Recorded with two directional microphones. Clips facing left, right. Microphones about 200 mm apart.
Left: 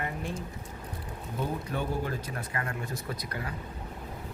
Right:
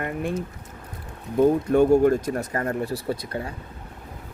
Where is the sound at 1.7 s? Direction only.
50° right (ahead or behind); by 3.5 s 25° right (ahead or behind).